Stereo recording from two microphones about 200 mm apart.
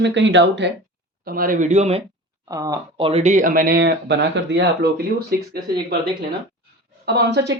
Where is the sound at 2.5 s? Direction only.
15° right (ahead or behind); by 5.6 s 50° right (ahead or behind).